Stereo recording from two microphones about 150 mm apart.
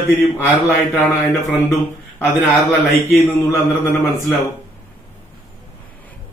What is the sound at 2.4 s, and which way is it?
A man's voice, 15° left (ahead or behind).